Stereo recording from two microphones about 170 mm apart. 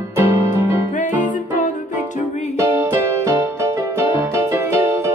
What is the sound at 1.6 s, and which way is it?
Music, 50° left (ahead or behind).